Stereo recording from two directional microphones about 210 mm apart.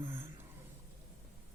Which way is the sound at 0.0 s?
10° right (ahead or behind).